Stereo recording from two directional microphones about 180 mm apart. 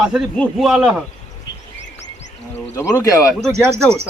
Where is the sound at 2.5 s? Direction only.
10° left (ahead or behind).